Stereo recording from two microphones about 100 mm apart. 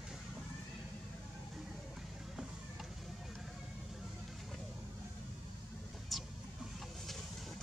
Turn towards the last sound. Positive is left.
turn(degrees=0)  # may be behind; listen again after turning